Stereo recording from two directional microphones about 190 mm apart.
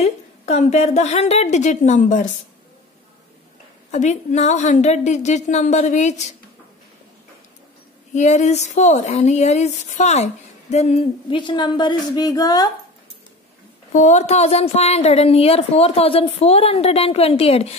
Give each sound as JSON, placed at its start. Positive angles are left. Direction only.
{"t": 0.0, "sound": "speech", "side_deg": 35}
{"t": 3.9, "sound": "speech", "side_deg": 40}
{"t": 8.1, "sound": "speech", "side_deg": 35}
{"t": 13.9, "sound": "speech", "side_deg": 40}